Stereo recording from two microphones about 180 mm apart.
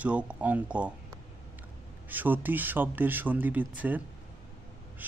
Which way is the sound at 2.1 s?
10° right (ahead or behind).